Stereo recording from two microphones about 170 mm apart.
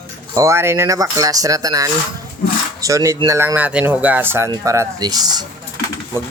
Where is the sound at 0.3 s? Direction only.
15° right (ahead or behind).